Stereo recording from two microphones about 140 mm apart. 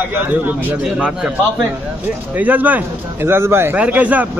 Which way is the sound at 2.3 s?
10° right (ahead or behind).